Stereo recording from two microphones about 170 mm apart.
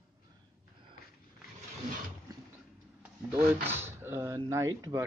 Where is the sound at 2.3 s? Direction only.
20° right (ahead or behind).